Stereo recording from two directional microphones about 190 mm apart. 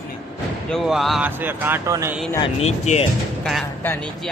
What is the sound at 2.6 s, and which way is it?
Speech, 35° left (ahead or behind).